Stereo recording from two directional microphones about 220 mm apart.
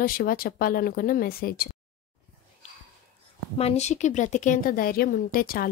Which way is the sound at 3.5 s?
30° left (ahead or behind).